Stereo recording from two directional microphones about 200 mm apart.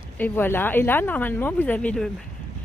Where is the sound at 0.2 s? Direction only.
10° left (ahead or behind).